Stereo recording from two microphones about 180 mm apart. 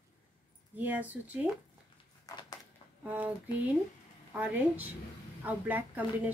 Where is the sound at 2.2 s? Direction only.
20° left (ahead or behind).